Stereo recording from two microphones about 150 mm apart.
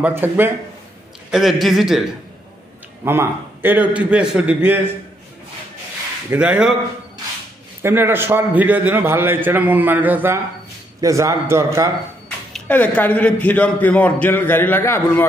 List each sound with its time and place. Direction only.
0.0 s a man's voice: 15° right (ahead or behind)
1.3 s a man's voice: centre (ahead or behind)
3.1 s a man's voice: 15° right (ahead or behind)
6.3 s a man's voice: 10° right (ahead or behind)
7.8 s a man's voice: 15° right (ahead or behind)
12.5 s a man's voice: 10° left (ahead or behind)